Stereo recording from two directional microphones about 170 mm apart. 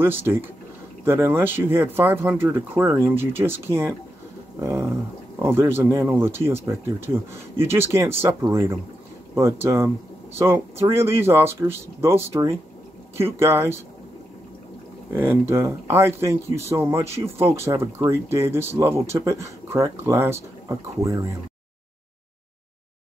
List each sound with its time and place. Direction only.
0.0 s speech: 10° right (ahead or behind)
15.1 s speech: 15° right (ahead or behind)